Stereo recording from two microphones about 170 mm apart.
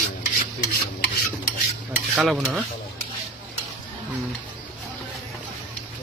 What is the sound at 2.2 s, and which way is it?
Speech, centre (ahead or behind).